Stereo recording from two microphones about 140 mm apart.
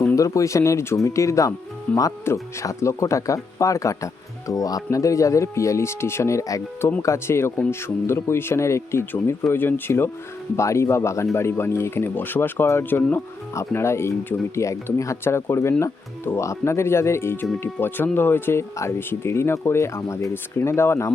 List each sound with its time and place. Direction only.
0.2 s speech: 25° left (ahead or behind)